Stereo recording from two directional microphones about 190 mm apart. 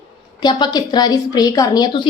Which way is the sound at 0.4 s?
20° left (ahead or behind).